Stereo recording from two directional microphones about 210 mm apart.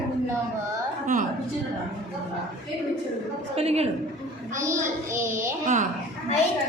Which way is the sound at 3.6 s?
30° right (ahead or behind).